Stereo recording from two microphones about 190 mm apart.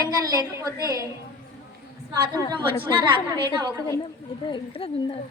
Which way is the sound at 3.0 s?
25° right (ahead or behind).